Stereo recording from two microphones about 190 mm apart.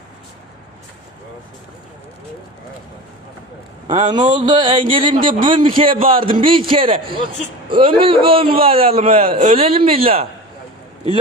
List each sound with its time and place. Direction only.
3.8 s a man's voice: 25° right (ahead or behind)